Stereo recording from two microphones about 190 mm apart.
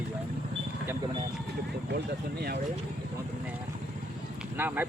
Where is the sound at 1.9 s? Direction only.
60° right (ahead or behind).